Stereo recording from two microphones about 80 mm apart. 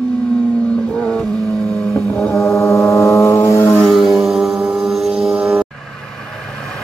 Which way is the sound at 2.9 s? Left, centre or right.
Left.